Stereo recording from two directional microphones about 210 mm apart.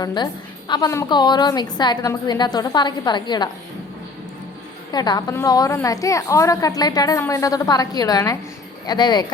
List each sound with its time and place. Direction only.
0.0 s a woman's voice: 20° left (ahead or behind)
4.9 s a woman's voice: 20° left (ahead or behind)